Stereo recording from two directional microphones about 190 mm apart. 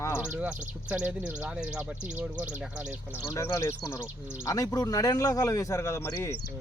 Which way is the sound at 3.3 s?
15° left (ahead or behind).